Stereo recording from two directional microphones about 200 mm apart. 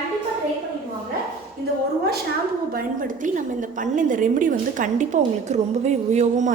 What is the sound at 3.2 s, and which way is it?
A woman's voice, 40° right (ahead or behind).